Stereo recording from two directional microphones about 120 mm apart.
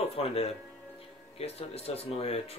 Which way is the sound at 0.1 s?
55° left (ahead or behind).